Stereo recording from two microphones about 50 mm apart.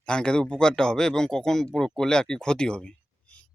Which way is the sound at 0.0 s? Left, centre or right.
Centre.